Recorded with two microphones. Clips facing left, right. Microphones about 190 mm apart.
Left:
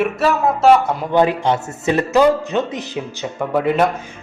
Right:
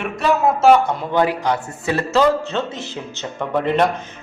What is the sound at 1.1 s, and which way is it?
A man's voice, 20° left (ahead or behind).